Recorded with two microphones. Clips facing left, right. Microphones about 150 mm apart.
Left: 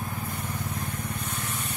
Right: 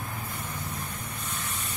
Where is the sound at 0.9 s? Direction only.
60° left (ahead or behind).